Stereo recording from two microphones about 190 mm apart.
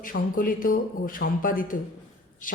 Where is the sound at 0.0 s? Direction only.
50° left (ahead or behind).